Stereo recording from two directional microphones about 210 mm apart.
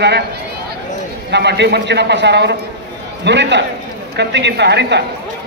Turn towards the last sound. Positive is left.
turn(degrees=-55)  # may be behind; listen again after turning